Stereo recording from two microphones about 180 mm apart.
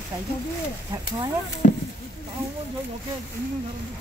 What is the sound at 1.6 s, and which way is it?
Speech, 50° left (ahead or behind).